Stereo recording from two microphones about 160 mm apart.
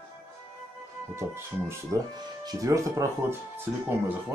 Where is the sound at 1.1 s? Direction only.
15° right (ahead or behind).